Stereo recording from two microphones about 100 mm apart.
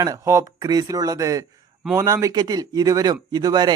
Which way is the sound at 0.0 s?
30° right (ahead or behind).